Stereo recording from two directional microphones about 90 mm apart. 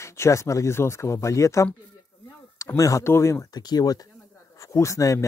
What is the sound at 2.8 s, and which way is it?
Speech, 35° left (ahead or behind).